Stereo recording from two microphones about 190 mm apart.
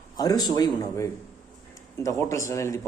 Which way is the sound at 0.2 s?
20° left (ahead or behind).